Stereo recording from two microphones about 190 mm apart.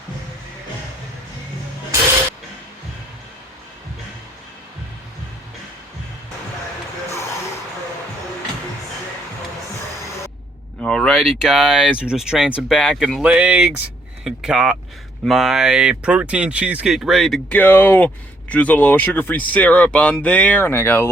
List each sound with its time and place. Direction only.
10.8 s speech: 5° left (ahead or behind)